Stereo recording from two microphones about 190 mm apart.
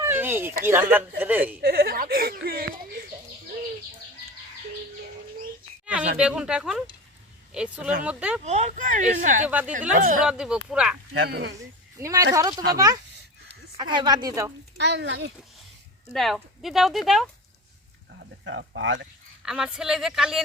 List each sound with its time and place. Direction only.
0.0 s a sound: 10° right (ahead or behind)
0.6 s speech: 10° right (ahead or behind)
1.6 s speech: 55° right (ahead or behind)
5.8 s speech: 5° right (ahead or behind)
8.4 s speech: 35° right (ahead or behind)
9.5 s speech: 10° right (ahead or behind)
9.9 s speech: 45° right (ahead or behind)
10.2 s speech: 5° right (ahead or behind)
11.1 s speech: 60° right (ahead or behind)
11.5 s a woman's voice: 15° right (ahead or behind)
14.8 s a child's voice: 65° right (ahead or behind)
16.1 s speech: centre (ahead or behind)
18.2 s speech: 70° right (ahead or behind)
19.5 s speech: 5° right (ahead or behind)